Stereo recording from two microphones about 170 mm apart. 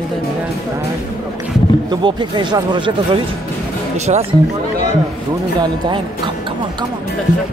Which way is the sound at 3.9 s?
40° right (ahead or behind).